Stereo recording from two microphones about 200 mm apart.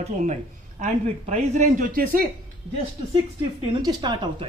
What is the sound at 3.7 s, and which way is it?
Speech, 20° right (ahead or behind).